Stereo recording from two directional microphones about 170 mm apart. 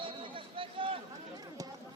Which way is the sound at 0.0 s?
30° right (ahead or behind).